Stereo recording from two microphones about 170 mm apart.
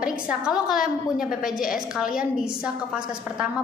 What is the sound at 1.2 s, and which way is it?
Speech, 55° left (ahead or behind).